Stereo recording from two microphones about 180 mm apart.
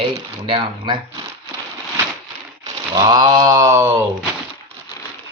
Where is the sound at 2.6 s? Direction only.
20° right (ahead or behind).